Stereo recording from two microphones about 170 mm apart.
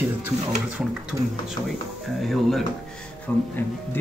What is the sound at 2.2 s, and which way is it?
Speech, centre (ahead or behind).